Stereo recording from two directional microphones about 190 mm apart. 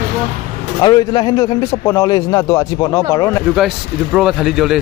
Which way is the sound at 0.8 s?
25° left (ahead or behind).